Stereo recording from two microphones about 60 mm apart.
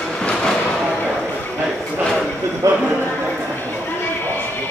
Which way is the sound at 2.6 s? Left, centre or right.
Right.